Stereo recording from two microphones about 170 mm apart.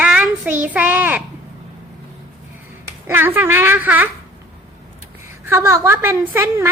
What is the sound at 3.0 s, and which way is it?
A child's voice, 10° right (ahead or behind).